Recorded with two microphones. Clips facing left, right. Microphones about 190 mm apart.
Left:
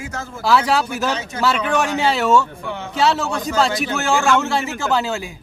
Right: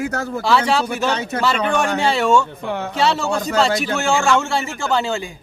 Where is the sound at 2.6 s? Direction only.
60° right (ahead or behind).